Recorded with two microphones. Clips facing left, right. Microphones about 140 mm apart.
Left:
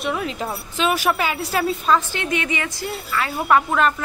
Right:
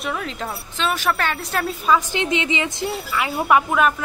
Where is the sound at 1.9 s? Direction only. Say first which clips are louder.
Right 1 dB; 20° right (ahead or behind).